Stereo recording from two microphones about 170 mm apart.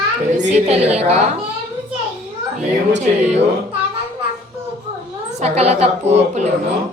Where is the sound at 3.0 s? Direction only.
40° right (ahead or behind).